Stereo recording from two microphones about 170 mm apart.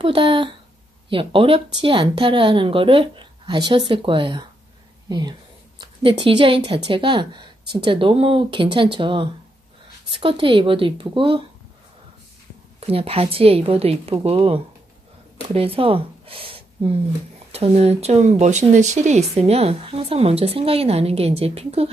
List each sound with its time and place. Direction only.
0.0 s speech: 30° right (ahead or behind)
5.8 s speech: 30° right (ahead or behind)
12.8 s speech: 35° right (ahead or behind)